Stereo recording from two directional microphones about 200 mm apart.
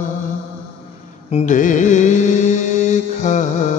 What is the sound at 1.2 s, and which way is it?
Music, 35° left (ahead or behind).